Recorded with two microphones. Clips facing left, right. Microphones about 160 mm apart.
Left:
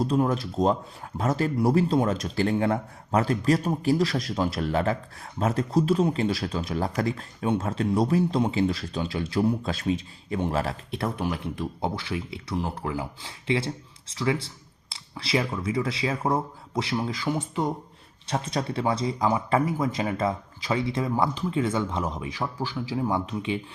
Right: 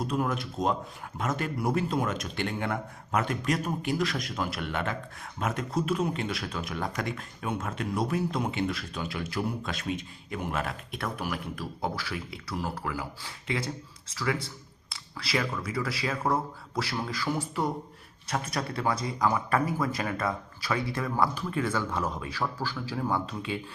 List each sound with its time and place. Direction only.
0.0 s speech: 30° left (ahead or behind)